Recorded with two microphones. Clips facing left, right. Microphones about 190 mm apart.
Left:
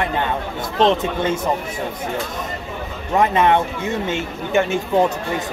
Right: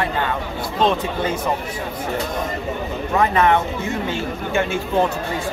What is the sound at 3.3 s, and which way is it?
Speech, 20° left (ahead or behind).